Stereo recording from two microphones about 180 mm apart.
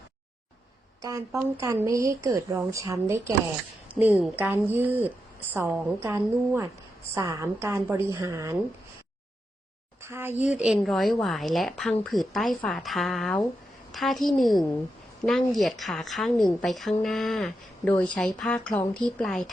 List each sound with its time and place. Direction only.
1.0 s a woman's voice: 15° right (ahead or behind)
10.0 s a woman's voice: 15° right (ahead or behind); by 19.5 s 5° left (ahead or behind)